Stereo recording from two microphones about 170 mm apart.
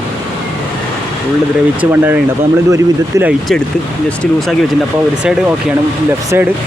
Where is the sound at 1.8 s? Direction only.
10° right (ahead or behind).